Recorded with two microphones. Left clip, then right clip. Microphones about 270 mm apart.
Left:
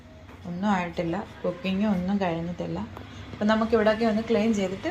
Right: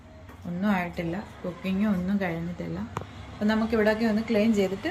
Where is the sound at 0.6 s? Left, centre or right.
Centre.